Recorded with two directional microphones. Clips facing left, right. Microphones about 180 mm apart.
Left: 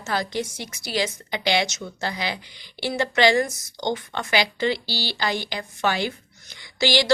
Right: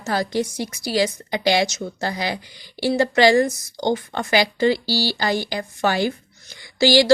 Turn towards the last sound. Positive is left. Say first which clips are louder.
# right 6 dB
turn(degrees=-35)  # may be behind; listen again after turning